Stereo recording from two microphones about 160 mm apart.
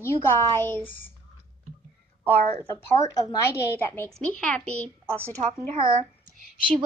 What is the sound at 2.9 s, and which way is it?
A woman's voice, 20° left (ahead or behind).